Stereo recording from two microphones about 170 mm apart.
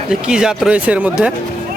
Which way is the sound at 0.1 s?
5° right (ahead or behind).